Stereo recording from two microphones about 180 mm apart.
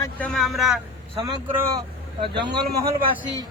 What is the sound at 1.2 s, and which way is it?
Speech, 25° right (ahead or behind).